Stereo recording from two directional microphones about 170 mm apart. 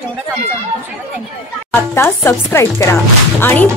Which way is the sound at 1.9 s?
15° left (ahead or behind).